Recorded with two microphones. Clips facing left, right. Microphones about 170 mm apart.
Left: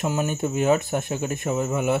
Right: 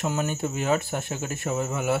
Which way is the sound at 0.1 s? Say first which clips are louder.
Left 3 dB; 15° left (ahead or behind).